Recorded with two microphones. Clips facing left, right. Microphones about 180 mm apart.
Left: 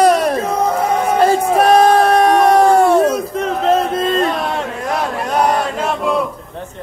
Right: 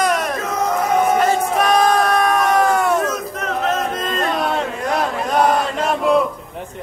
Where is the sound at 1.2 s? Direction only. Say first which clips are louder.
Left 5 dB; 30° left (ahead or behind).